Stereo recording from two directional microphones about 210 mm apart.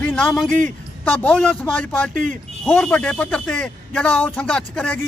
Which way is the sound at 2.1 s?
35° right (ahead or behind).